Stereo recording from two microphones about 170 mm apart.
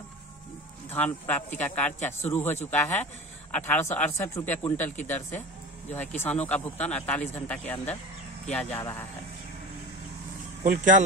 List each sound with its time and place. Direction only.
0.8 s speech: 10° left (ahead or behind)
6.4 s speech: 10° left (ahead or behind)
10.6 s speech: 50° right (ahead or behind)